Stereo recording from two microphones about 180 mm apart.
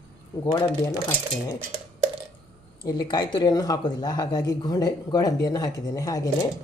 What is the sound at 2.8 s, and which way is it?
Speech, 20° left (ahead or behind).